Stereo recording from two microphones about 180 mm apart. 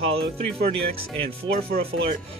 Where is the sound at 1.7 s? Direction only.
50° right (ahead or behind).